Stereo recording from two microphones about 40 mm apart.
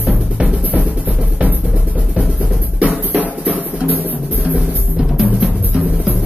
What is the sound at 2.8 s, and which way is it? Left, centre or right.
Music, right.